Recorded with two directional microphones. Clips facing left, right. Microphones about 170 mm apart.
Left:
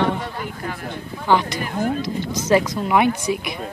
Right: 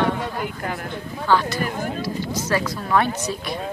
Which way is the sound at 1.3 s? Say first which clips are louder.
Left 1 dB; 15° left (ahead or behind).